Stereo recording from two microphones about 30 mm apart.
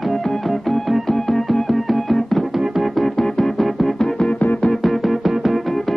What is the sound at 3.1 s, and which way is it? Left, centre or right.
Music, left.